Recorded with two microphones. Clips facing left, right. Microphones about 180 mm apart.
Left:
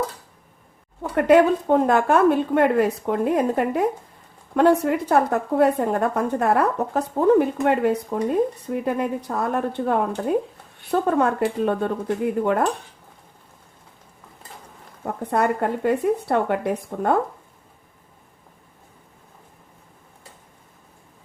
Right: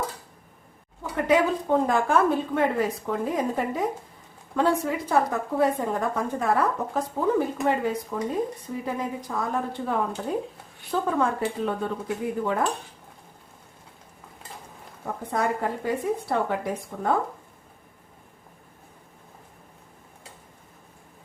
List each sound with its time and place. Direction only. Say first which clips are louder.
1.1 s a woman's voice: left 6 dB; 60° left (ahead or behind)
15.0 s a woman's voice: left 5 dB; 65° left (ahead or behind)